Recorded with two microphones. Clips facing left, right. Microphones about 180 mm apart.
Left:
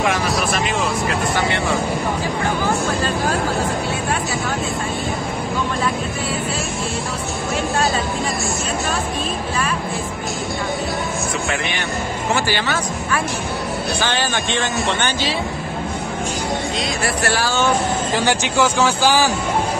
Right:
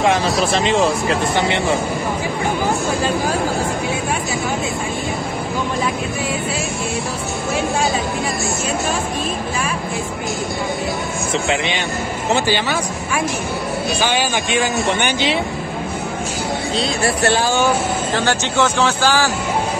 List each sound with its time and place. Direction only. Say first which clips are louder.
0.0 s speech: right 3 dB; 25° right (ahead or behind)
11.4 s speech: right 3 dB; 20° right (ahead or behind)
16.7 s speech: right 3 dB; 25° right (ahead or behind)
18.1 s speech: even; 15° left (ahead or behind)